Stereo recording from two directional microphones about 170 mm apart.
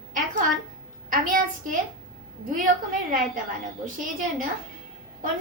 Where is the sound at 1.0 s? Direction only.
50° right (ahead or behind).